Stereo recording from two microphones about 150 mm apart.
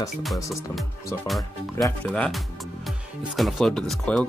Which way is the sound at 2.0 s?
5° left (ahead or behind).